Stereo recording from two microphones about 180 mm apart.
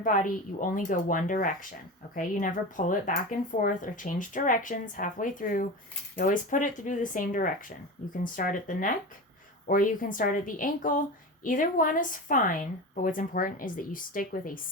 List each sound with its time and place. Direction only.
0.0 s speech: 50° left (ahead or behind)